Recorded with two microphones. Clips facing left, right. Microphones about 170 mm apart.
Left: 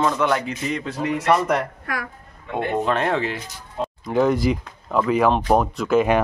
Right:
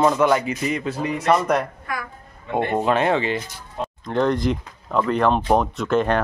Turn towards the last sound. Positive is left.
turn(degrees=5)  # may be behind; listen again after turning